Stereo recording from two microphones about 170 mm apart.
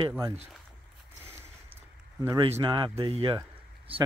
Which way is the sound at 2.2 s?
20° right (ahead or behind).